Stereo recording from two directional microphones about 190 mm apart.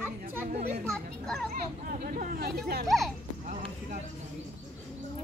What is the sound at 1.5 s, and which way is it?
Speech, 45° right (ahead or behind).